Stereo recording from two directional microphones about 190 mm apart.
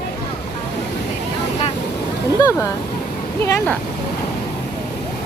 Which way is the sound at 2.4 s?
15° left (ahead or behind).